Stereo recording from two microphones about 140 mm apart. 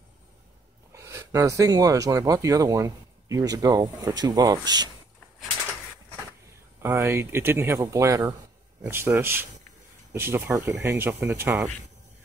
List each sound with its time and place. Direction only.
0.9 s speech: 20° right (ahead or behind)
6.8 s speech: 15° right (ahead or behind)